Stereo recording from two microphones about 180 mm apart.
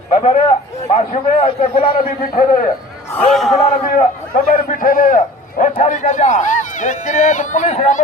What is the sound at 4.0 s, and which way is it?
Speech, 50° left (ahead or behind).